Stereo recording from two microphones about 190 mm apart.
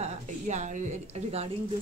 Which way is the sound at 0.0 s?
40° right (ahead or behind).